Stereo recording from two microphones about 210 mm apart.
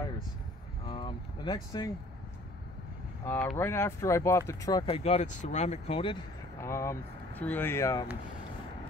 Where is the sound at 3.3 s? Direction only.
10° left (ahead or behind); by 6.1 s 25° left (ahead or behind).